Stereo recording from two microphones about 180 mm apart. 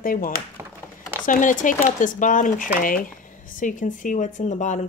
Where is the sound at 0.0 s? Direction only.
50° left (ahead or behind).